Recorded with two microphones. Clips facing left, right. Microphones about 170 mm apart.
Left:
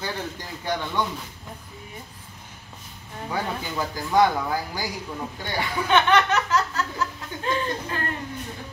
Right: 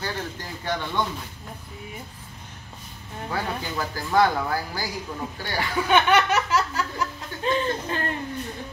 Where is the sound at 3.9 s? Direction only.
15° left (ahead or behind).